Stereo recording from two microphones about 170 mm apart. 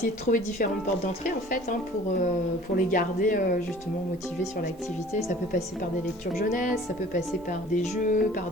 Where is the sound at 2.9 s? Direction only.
50° left (ahead or behind).